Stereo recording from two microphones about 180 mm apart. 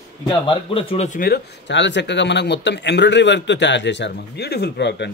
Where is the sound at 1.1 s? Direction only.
55° left (ahead or behind).